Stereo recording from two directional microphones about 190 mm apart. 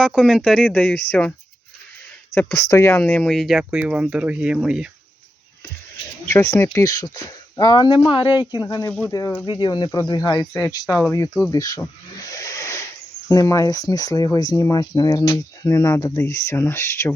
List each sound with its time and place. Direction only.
0.0 s speech: 5° right (ahead or behind)
0.7 s speech: 10° left (ahead or behind)
2.3 s speech: 10° left (ahead or behind); by 4.9 s 5° right (ahead or behind)
6.3 s speech: 15° left (ahead or behind)
8.6 s speech: 15° left (ahead or behind)